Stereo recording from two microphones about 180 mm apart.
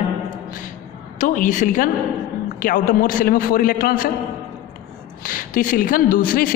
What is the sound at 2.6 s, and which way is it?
Speech, 45° left (ahead or behind).